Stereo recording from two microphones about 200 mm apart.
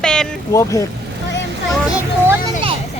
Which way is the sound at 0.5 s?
15° left (ahead or behind).